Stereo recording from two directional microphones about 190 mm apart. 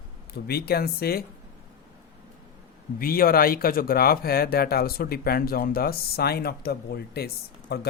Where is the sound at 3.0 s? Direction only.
50° left (ahead or behind).